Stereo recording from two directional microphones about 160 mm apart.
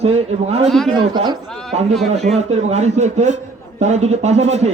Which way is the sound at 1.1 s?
25° right (ahead or behind).